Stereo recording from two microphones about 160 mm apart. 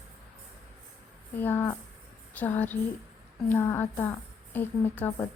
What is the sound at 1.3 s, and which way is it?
A woman's voice, 10° left (ahead or behind).